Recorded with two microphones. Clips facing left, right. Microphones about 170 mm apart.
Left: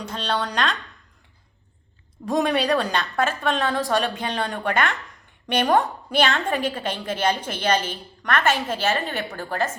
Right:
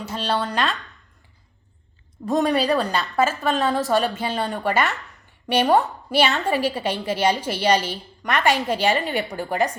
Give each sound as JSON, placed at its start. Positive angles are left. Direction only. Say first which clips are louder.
{"t": 0.0, "sound": "speech", "louder": "right 2 dB", "side_deg": -5}
{"t": 2.2, "sound": "a woman's voice", "louder": "right 1 dB", "side_deg": 0}